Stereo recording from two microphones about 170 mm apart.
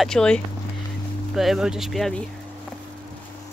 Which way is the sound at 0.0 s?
5° left (ahead or behind).